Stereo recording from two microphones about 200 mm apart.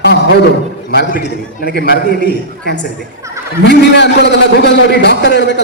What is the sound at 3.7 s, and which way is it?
A man's voice, 60° left (ahead or behind).